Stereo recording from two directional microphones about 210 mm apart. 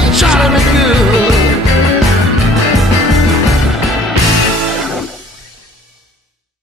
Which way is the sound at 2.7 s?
Centre (ahead or behind).